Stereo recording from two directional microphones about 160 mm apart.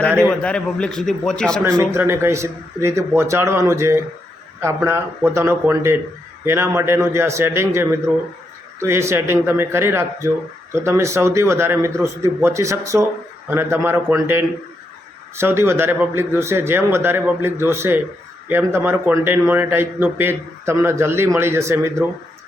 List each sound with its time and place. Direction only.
0.3 s a man's voice: 5° left (ahead or behind)
1.8 s speech: 15° right (ahead or behind)